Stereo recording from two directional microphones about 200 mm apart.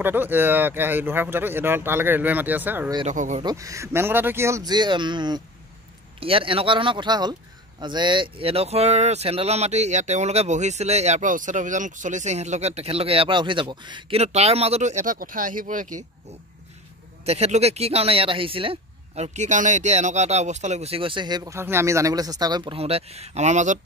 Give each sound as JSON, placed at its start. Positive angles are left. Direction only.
{"t": 0.0, "sound": "speech", "side_deg": -10}
{"t": 3.1, "sound": "speech", "side_deg": -35}
{"t": 3.4, "sound": "speech", "side_deg": -15}
{"t": 17.2, "sound": "speech", "side_deg": -30}